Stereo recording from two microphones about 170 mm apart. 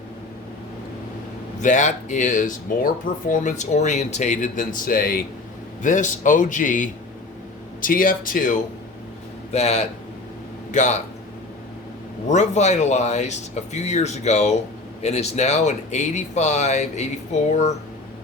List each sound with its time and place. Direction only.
1.6 s speech: 45° left (ahead or behind)
5.8 s speech: 50° left (ahead or behind)
9.5 s a man's voice: 40° left (ahead or behind)
12.3 s speech: 45° left (ahead or behind)